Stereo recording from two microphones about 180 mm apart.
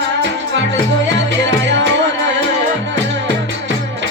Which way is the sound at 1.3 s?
80° right.